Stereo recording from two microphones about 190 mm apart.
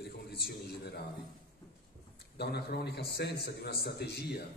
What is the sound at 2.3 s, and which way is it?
A man's voice, 60° left (ahead or behind).